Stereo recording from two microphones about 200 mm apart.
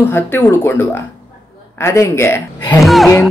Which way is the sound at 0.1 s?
10° left (ahead or behind).